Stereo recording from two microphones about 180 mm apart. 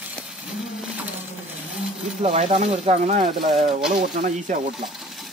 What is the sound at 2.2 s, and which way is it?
Speech, 40° right (ahead or behind).